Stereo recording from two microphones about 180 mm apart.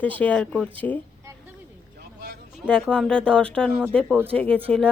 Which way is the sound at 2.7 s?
5° left (ahead or behind).